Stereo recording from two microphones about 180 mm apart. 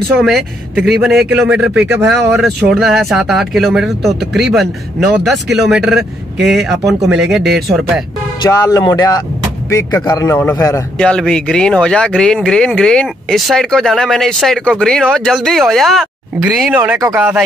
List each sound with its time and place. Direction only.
0.2 s speech: 5° right (ahead or behind)
8.4 s a man's voice: 20° left (ahead or behind)
11.0 s speech: 5° left (ahead or behind)